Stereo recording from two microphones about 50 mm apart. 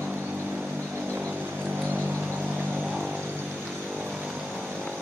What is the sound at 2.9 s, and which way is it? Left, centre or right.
Vehicle, centre.